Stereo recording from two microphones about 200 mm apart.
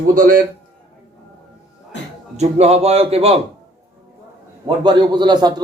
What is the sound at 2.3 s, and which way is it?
A man's voice, 30° right (ahead or behind).